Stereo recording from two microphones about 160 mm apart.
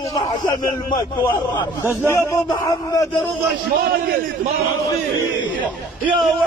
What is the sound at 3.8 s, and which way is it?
Speech, 75° right (ahead or behind).